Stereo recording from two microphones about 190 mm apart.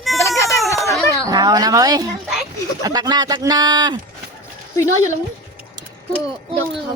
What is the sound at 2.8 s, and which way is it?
Speech, 20° right (ahead or behind).